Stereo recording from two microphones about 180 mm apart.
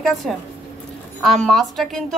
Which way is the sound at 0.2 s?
5° left (ahead or behind).